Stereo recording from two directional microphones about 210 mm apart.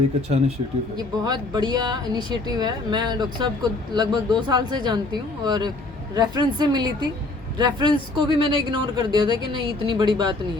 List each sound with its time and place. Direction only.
0.9 s speech: 20° right (ahead or behind)